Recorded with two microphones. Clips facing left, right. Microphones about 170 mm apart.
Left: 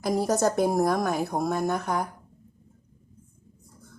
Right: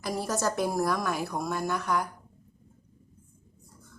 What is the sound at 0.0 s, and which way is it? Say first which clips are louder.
A woman's voice: left 6 dB; 45° left (ahead or behind).